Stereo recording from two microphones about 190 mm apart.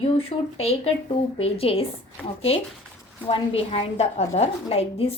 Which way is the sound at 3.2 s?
30° left (ahead or behind).